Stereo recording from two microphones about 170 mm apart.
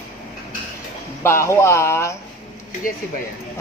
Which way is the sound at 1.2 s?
15° left (ahead or behind).